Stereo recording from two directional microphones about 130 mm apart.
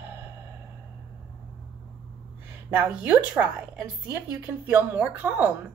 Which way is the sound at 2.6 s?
10° right (ahead or behind).